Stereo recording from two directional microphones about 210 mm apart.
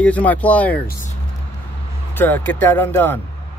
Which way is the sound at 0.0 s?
5° left (ahead or behind).